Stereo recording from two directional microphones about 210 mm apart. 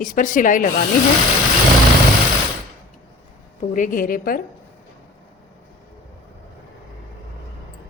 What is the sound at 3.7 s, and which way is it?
Speech, 40° left (ahead or behind).